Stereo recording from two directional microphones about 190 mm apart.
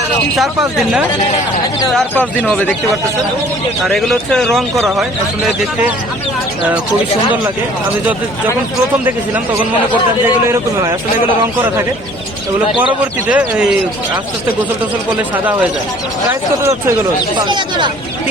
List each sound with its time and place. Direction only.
3.8 s speech: centre (ahead or behind)
13.2 s speech: 5° right (ahead or behind)
17.3 s speech: 25° right (ahead or behind)